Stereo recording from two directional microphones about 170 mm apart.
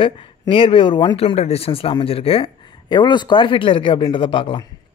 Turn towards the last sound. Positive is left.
turn(degrees=30)  # may be behind; listen again after turning